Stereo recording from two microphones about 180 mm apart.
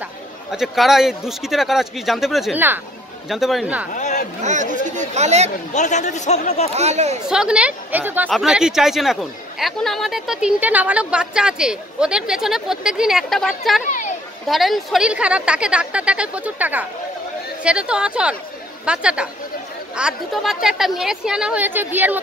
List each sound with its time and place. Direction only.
0.5 s speech: centre (ahead or behind)
3.9 s a sound: 40° left (ahead or behind)
4.8 s speech: 40° right (ahead or behind)
5.7 s a man's voice: 40° left (ahead or behind)
6.7 s speech: 35° right (ahead or behind)
7.2 s a woman's voice: 5° right (ahead or behind)
13.8 s a sound: 45° left (ahead or behind)
14.5 s speech: centre (ahead or behind)